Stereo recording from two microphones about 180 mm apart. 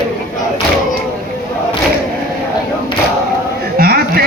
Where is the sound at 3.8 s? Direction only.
55° right (ahead or behind).